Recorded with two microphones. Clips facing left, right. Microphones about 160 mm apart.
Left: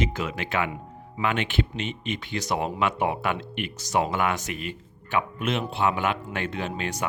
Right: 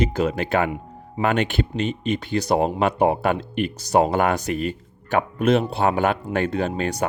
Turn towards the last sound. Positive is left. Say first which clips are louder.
# right 6 dB
turn(degrees=-40)  # may be behind; listen again after turning